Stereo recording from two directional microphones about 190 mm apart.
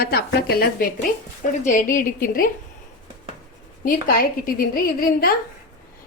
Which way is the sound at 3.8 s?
50° left (ahead or behind).